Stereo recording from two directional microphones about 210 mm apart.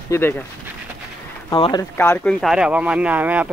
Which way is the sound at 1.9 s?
10° left (ahead or behind).